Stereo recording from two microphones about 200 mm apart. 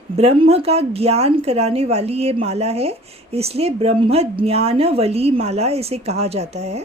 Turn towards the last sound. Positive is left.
turn(degrees=-30)  # may be behind; listen again after turning